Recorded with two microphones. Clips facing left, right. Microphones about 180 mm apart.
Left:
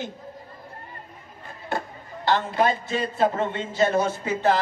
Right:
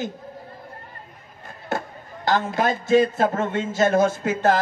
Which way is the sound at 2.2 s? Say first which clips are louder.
Even; 45° right (ahead or behind).